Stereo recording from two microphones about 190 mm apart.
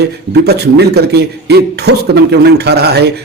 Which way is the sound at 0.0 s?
60° right (ahead or behind).